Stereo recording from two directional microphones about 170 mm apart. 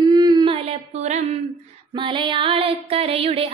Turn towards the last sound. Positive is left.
turn(degrees=-35)  # may be behind; listen again after turning